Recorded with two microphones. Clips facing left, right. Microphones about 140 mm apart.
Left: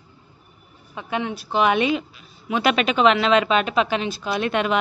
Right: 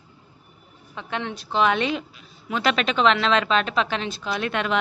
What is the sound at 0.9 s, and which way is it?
A woman's voice, 10° left (ahead or behind).